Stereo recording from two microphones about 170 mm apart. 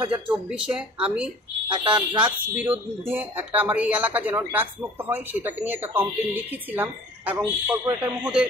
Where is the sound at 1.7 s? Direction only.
30° right (ahead or behind).